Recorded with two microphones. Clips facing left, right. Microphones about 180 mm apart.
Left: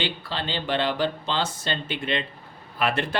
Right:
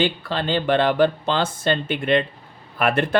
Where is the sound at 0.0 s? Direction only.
50° right (ahead or behind).